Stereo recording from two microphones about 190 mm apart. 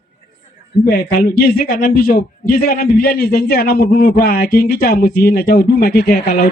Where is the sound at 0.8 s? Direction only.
55° left (ahead or behind).